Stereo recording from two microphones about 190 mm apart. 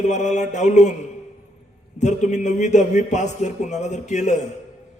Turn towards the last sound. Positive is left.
turn(degrees=40)  # may be behind; listen again after turning